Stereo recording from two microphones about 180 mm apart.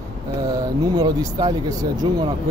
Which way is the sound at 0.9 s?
20° right (ahead or behind).